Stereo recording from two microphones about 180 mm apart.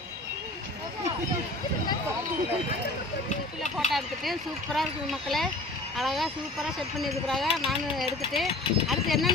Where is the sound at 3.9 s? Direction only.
Centre (ahead or behind).